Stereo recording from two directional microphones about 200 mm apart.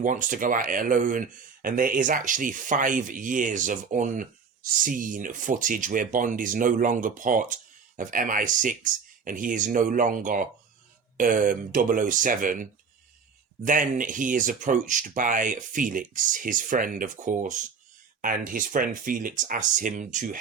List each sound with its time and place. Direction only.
0.0 s speech: 40° right (ahead or behind)
13.7 s speech: 40° right (ahead or behind)